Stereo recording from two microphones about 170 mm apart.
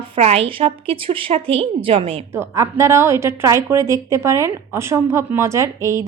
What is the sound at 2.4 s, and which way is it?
A woman's voice, 15° right (ahead or behind).